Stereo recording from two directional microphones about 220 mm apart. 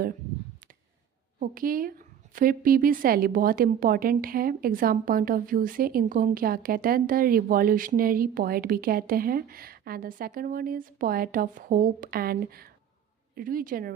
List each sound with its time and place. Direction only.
1.4 s a woman's voice: 40° right (ahead or behind)